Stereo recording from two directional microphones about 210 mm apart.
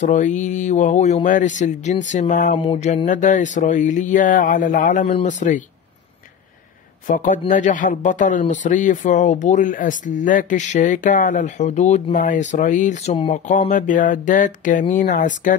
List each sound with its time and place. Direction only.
0.0 s speech: 35° left (ahead or behind)
7.1 s speech: 40° left (ahead or behind)